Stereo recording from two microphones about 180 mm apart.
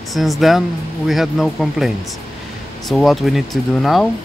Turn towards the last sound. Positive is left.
turn(degrees=0)  # may be behind; listen again after turning